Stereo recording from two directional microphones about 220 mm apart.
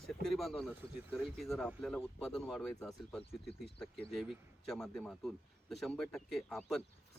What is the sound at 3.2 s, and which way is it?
Speech, 25° left (ahead or behind).